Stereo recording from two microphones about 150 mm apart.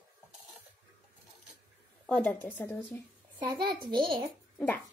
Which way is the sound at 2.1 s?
10° left (ahead or behind).